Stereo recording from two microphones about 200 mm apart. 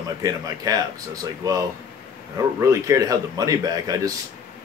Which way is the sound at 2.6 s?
15° right (ahead or behind).